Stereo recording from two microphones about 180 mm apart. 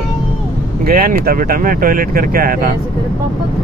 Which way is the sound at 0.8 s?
55° right (ahead or behind).